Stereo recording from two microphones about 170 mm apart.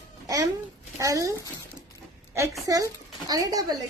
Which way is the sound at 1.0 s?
20° right (ahead or behind).